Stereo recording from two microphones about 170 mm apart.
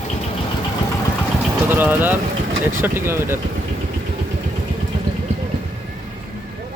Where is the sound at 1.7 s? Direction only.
10° right (ahead or behind).